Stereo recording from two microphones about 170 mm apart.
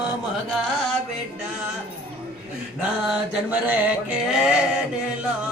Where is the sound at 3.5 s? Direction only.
10° right (ahead or behind).